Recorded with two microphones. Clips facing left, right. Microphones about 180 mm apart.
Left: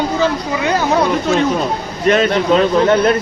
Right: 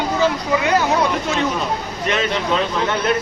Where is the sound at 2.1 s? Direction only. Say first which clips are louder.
Left 8 dB; 40° left (ahead or behind).